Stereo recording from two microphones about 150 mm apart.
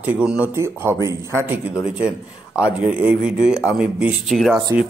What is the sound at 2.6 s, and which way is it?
Speech, 10° right (ahead or behind).